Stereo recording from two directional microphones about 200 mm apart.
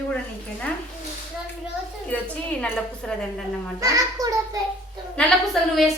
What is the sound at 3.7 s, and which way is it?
Speech, 15° right (ahead or behind).